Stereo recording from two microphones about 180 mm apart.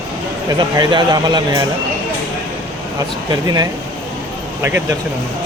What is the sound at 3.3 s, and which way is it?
Speech, 20° right (ahead or behind).